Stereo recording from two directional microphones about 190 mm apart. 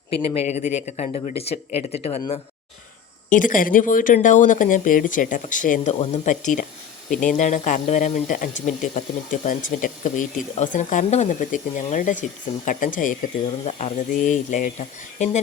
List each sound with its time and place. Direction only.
0.1 s speech: 30° left (ahead or behind)
3.2 s speech: 45° left (ahead or behind)